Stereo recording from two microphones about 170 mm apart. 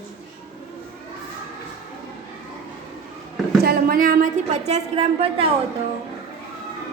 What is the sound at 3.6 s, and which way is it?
A woman's voice, 60° right (ahead or behind).